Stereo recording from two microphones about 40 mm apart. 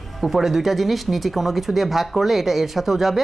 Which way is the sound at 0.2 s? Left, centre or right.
Centre.